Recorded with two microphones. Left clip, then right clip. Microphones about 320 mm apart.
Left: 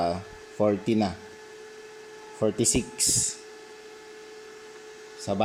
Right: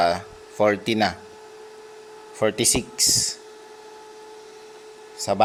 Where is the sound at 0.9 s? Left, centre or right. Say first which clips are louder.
Right 5 dB; right.